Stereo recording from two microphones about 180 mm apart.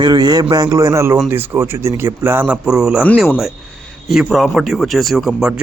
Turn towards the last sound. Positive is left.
turn(degrees=-5)  # may be behind; listen again after turning